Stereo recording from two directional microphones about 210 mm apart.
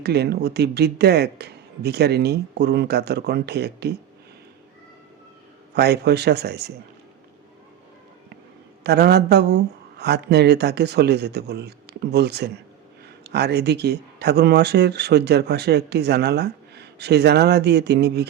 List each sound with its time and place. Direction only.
0.0 s speech: 50° right (ahead or behind)
5.7 s speech: 50° right (ahead or behind)
8.8 s speech: 50° right (ahead or behind)